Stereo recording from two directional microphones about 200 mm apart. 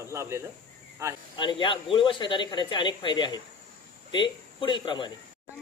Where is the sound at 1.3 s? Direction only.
25° left (ahead or behind).